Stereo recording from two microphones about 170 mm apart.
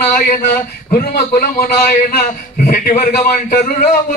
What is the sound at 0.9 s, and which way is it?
A man's voice, 60° left (ahead or behind).